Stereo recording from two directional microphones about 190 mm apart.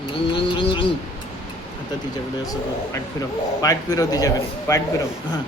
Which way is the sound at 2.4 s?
20° left (ahead or behind).